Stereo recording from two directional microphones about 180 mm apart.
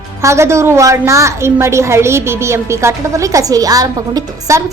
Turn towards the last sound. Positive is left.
turn(degrees=-20)  # may be behind; listen again after turning